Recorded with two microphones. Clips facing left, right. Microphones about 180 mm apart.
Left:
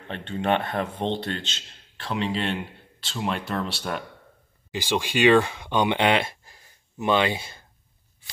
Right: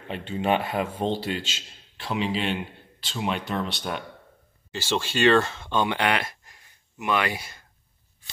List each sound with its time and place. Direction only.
0.1 s speech: 5° right (ahead or behind)
4.7 s speech: 15° left (ahead or behind)